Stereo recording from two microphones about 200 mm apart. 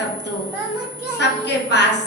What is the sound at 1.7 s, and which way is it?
Speech, 60° left (ahead or behind).